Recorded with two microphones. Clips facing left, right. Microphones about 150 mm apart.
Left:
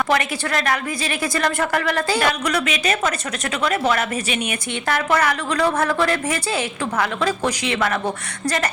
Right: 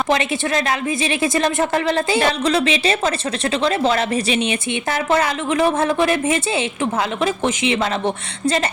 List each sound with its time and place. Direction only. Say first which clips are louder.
0.1 s a woman's voice: right 2 dB; 20° right (ahead or behind)